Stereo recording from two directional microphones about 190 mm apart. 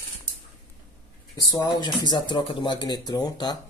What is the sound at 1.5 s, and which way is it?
Speech, 20° left (ahead or behind).